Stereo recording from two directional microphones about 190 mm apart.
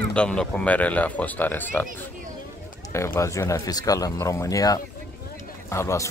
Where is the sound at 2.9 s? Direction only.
15° left (ahead or behind).